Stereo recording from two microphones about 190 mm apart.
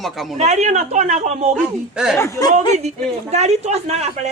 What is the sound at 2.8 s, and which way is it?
Speech, 35° right (ahead or behind).